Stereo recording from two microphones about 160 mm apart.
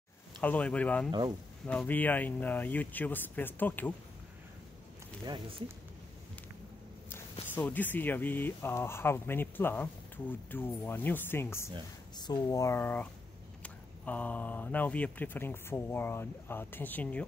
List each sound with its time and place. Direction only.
0.4 s speech: 10° left (ahead or behind)
5.2 s speech: 25° right (ahead or behind)
7.5 s speech: 10° left (ahead or behind)
12.2 s speech: 25° left (ahead or behind); by 17.2 s 10° left (ahead or behind)